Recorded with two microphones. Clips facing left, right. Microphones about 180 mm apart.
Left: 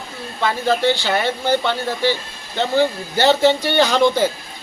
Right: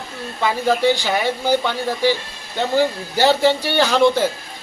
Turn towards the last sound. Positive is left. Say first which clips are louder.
# even
turn(degrees=0)  # may be behind; listen again after turning